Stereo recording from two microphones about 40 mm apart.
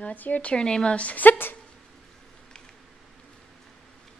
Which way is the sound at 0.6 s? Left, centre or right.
Left.